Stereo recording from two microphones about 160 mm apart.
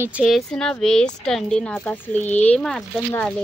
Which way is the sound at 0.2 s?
Centre (ahead or behind).